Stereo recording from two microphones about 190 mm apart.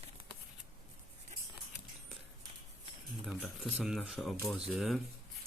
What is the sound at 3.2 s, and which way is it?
Speech, centre (ahead or behind).